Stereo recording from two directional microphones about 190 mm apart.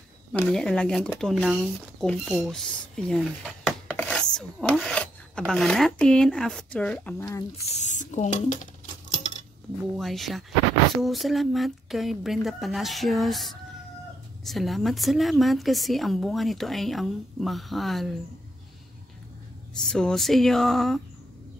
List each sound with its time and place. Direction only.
0.3 s a woman's voice: 5° left (ahead or behind)
7.7 s speech: 40° left (ahead or behind)
9.1 s coin: 35° left (ahead or behind)
9.9 s a woman's voice: centre (ahead or behind)
19.8 s a woman's voice: 5° left (ahead or behind)